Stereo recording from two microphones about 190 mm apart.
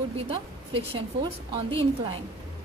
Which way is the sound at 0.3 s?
30° right (ahead or behind).